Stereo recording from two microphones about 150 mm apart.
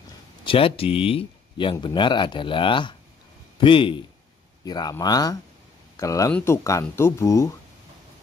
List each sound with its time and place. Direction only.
0.0 s a man's voice: 35° left (ahead or behind)